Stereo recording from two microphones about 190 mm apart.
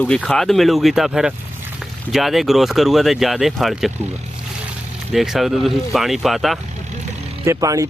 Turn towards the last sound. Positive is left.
turn(degrees=-15)  # may be behind; listen again after turning